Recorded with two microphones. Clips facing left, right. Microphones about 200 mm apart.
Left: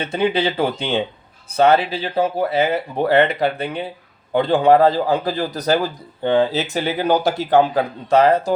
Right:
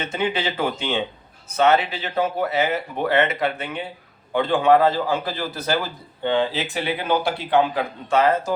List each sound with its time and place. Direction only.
0.0 s a man's voice: 35° left (ahead or behind)